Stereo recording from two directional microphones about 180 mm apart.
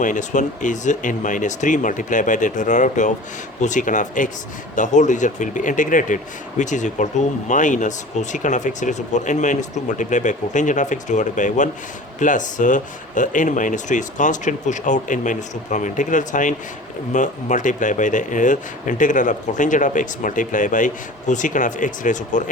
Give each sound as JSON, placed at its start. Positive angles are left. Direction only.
{"t": 0.0, "sound": "speech", "side_deg": 45}